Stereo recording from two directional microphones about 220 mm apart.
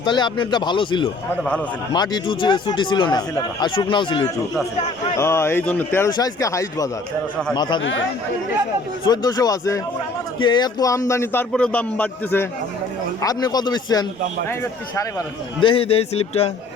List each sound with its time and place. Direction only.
0.0 s speech: 20° left (ahead or behind)
7.8 s speech: 60° left (ahead or behind)
9.0 s speech: 20° left (ahead or behind)
15.6 s speech: 25° left (ahead or behind)